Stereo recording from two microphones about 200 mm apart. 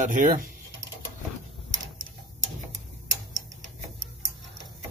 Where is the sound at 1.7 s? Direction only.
70° right (ahead or behind).